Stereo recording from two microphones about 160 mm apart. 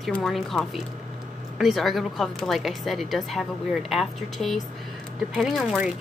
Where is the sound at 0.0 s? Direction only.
Centre (ahead or behind).